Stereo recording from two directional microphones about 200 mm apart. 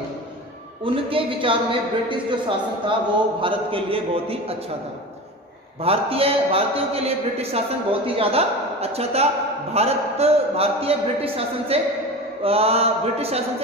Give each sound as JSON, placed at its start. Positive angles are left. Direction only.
{"t": 0.8, "sound": "a woman's voice", "side_deg": -25}
{"t": 5.8, "sound": "a woman's voice", "side_deg": -30}